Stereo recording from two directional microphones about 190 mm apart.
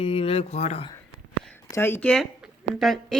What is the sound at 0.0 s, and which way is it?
Speech, 30° left (ahead or behind).